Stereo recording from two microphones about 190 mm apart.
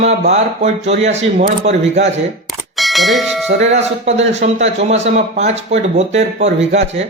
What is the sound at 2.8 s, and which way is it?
Speech, centre (ahead or behind).